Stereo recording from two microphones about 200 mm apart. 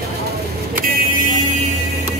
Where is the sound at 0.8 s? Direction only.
40° right (ahead or behind).